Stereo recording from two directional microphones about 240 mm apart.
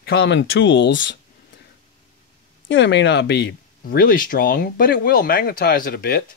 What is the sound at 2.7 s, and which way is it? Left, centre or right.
Speech, left.